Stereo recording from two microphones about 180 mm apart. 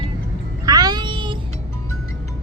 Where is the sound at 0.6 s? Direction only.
20° right (ahead or behind).